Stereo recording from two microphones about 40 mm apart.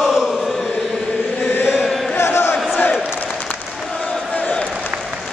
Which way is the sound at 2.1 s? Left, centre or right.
Left.